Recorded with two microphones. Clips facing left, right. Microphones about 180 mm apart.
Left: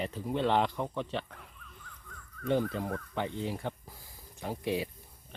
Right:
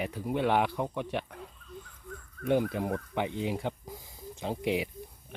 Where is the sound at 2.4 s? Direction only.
10° right (ahead or behind).